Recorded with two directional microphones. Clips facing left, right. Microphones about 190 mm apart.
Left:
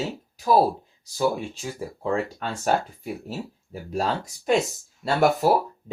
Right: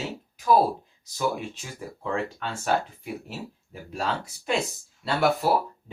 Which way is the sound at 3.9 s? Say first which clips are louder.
Left 4 dB; 40° left (ahead or behind).